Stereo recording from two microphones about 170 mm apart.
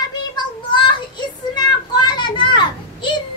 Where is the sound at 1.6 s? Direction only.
25° left (ahead or behind).